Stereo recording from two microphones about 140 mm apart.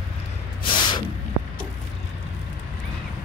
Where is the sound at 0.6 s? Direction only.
35° left (ahead or behind).